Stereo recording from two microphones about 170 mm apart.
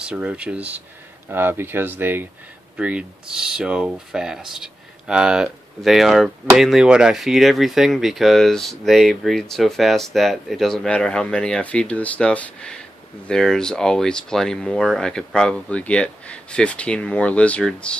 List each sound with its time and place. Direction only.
0.0 s speech: 5° right (ahead or behind)